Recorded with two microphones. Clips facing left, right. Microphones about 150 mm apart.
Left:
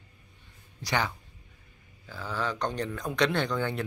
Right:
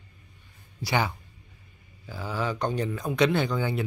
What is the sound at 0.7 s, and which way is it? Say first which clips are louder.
Speech: right 3 dB; 10° right (ahead or behind).